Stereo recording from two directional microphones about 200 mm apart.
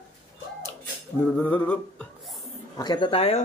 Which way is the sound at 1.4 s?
5° left (ahead or behind).